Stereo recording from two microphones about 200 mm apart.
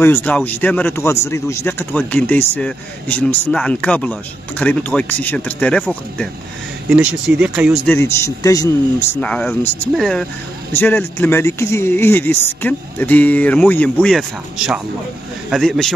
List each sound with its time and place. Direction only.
0.0 s speech: 10° left (ahead or behind)
6.9 s speech: 5° right (ahead or behind)
7.9 s speech: 15° left (ahead or behind)